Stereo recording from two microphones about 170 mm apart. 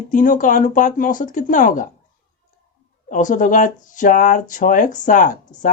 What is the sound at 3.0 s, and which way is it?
Speech, 50° left (ahead or behind).